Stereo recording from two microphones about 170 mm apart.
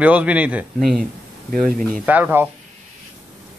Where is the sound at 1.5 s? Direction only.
55° right (ahead or behind).